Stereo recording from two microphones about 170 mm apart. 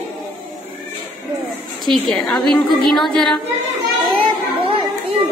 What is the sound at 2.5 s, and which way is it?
Speech, centre (ahead or behind).